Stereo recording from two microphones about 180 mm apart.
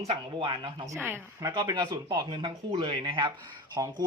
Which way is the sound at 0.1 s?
30° right (ahead or behind).